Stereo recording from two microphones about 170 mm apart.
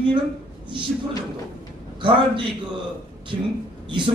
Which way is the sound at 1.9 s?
30° right (ahead or behind).